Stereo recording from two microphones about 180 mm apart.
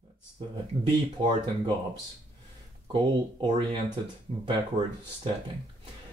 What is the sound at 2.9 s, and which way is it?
Speech, 25° right (ahead or behind).